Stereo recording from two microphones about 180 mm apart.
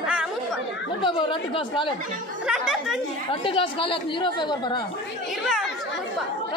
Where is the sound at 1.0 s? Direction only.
25° left (ahead or behind).